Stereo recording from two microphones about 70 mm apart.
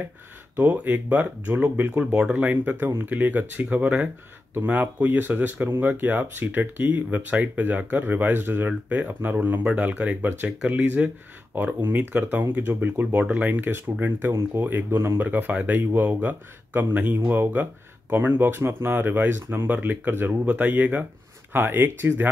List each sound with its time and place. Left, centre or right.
0.6 s speech: right
8.8 s speech: centre